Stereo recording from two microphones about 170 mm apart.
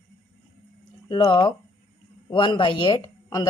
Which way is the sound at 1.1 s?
25° left (ahead or behind).